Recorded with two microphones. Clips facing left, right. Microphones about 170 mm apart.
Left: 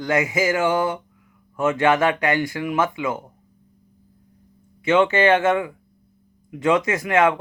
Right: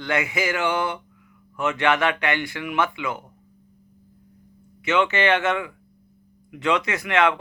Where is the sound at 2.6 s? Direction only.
25° left (ahead or behind).